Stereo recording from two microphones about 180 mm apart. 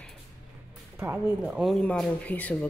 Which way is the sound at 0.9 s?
15° right (ahead or behind).